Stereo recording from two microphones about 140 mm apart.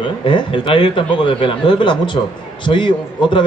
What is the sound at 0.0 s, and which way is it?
A man's voice, 35° left (ahead or behind).